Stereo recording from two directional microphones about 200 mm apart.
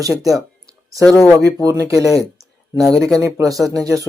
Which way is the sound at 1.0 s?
5° left (ahead or behind).